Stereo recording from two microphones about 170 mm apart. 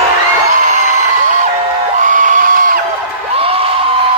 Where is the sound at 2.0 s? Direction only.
50° right (ahead or behind).